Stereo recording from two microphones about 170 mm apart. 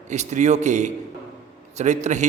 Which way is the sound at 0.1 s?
45° right (ahead or behind).